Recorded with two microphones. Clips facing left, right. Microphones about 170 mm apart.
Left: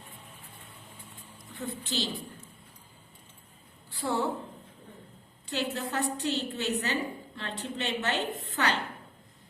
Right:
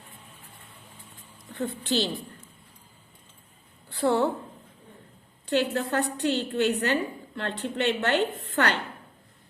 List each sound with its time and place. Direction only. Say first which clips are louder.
1.5 s a woman's voice: right 7 dB; 65° right (ahead or behind)
3.8 s a woman's voice: right 7 dB; 65° right (ahead or behind)
5.5 s a woman's voice: right 7 dB; 65° right (ahead or behind)